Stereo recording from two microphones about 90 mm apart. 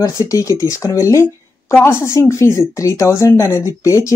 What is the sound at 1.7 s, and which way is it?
Speech, 25° left (ahead or behind).